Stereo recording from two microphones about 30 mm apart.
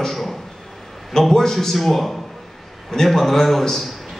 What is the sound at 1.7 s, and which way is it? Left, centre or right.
A man's voice, centre.